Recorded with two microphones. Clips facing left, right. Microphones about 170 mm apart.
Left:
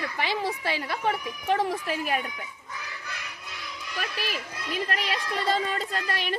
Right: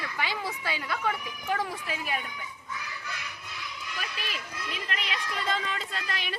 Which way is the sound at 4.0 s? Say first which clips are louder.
Left 7 dB; 40° left (ahead or behind).